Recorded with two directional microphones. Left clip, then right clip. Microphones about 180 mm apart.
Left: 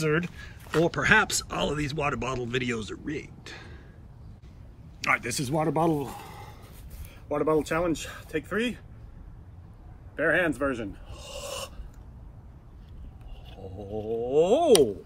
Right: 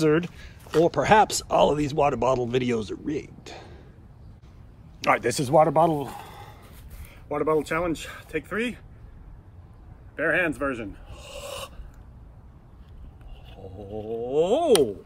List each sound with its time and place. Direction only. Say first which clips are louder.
0.0 s speech: right 5 dB; 15° right (ahead or behind)
5.0 s speech: right 4 dB; 25° right (ahead or behind)
6.2 s a sound: right 1 dB; 10° right (ahead or behind)
7.2 s speech: right 1 dB; centre (ahead or behind)
10.1 s speech: right 1 dB; centre (ahead or behind)
13.5 s a sound: even; centre (ahead or behind)
14.0 s speech: even; centre (ahead or behind)